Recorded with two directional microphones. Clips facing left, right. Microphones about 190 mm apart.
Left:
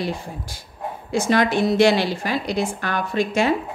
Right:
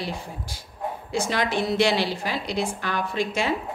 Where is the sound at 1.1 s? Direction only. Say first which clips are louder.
Left 6 dB; 50° left (ahead or behind).